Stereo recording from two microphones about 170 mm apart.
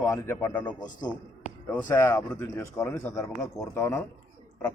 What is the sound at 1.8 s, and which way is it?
Speech, 15° left (ahead or behind).